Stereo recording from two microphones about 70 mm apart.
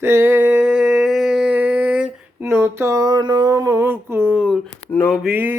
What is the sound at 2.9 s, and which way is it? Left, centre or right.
Mantra, right.